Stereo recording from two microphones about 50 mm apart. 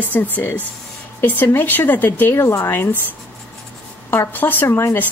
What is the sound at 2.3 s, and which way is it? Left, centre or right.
Speech, left.